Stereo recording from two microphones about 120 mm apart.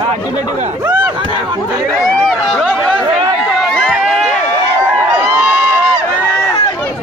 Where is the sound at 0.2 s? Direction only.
35° left (ahead or behind).